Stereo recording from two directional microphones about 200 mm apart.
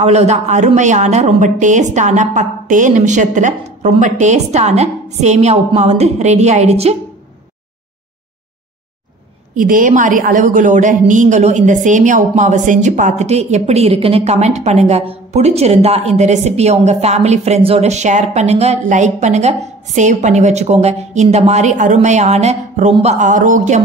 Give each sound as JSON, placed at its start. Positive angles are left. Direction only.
{"t": 0.0, "sound": "a woman's voice", "side_deg": -35}
{"t": 9.6, "sound": "a woman's voice", "side_deg": -45}